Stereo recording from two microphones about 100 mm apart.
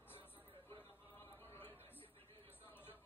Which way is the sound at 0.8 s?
25° left (ahead or behind).